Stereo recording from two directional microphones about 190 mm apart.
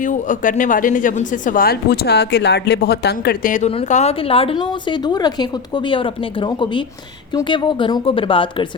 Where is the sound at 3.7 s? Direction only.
35° left (ahead or behind).